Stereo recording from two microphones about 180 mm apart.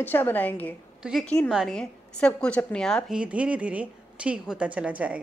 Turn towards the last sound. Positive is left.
turn(degrees=-5)  # may be behind; listen again after turning